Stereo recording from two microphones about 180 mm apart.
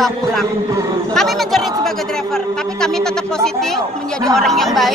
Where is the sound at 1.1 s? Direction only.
Centre (ahead or behind).